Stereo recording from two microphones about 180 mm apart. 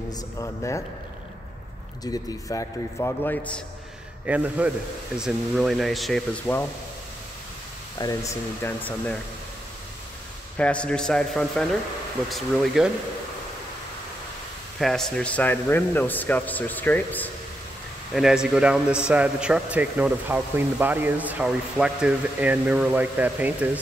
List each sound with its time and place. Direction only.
0.4 s a man's voice: 15° left (ahead or behind)
2.5 s a man's voice: 15° left (ahead or behind)
4.3 s speech: 5° right (ahead or behind)
8.0 s a man's voice: 15° left (ahead or behind)
10.6 s speech: 5° left (ahead or behind)
14.8 s a man's voice: centre (ahead or behind)
18.1 s speech: 5° right (ahead or behind)